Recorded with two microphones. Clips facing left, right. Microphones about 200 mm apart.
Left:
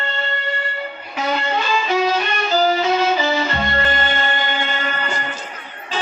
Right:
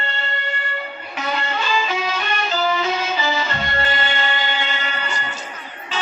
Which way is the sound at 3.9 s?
45° left (ahead or behind).